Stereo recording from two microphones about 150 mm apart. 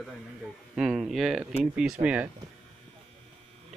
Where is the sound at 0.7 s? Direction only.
5° right (ahead or behind).